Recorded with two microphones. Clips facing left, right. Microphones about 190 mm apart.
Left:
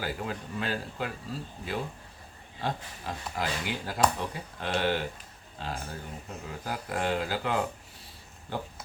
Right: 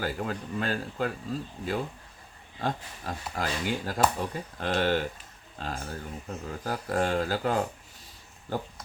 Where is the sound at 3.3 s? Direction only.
45° right (ahead or behind).